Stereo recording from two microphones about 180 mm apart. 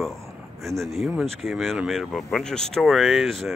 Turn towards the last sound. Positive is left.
turn(degrees=0)  # may be behind; listen again after turning